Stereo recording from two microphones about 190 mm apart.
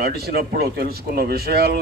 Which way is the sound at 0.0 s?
55° right (ahead or behind).